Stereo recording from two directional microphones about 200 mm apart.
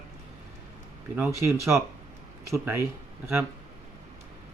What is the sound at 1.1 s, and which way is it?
Speech, 10° right (ahead or behind).